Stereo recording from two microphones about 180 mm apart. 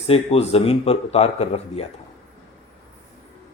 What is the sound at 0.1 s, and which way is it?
A man's voice, 35° left (ahead or behind).